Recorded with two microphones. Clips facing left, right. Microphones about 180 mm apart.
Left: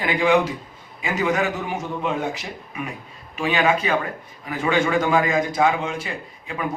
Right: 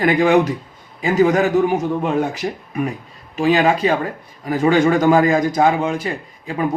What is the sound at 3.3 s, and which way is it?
A man's voice, 35° right (ahead or behind).